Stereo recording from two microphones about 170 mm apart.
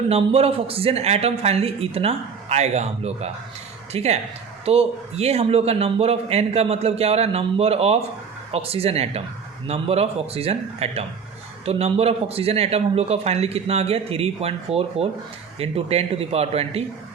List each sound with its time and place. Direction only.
0.1 s a man's voice: 35° right (ahead or behind)